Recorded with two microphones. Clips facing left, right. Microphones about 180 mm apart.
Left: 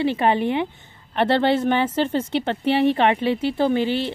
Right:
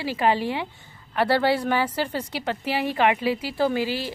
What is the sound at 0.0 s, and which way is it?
Speech, 25° left (ahead or behind).